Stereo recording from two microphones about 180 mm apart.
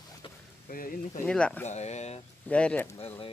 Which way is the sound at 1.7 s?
40° left (ahead or behind).